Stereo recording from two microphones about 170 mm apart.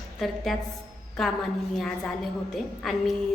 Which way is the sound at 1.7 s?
Centre (ahead or behind).